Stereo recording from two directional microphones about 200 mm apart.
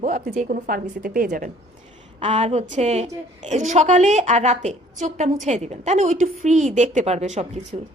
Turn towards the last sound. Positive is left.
turn(degrees=-35)  # may be behind; listen again after turning